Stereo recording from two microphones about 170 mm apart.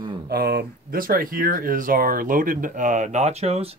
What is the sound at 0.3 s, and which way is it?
Speech, 65° right (ahead or behind).